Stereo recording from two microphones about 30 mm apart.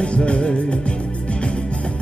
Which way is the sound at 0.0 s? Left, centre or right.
Left.